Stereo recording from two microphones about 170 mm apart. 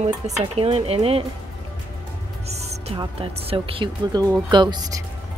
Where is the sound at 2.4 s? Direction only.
40° right (ahead or behind).